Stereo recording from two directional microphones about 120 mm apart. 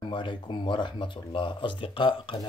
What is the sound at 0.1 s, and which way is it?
Speech, 40° left (ahead or behind).